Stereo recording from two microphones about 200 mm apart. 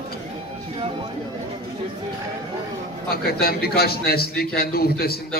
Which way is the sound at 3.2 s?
50° left (ahead or behind).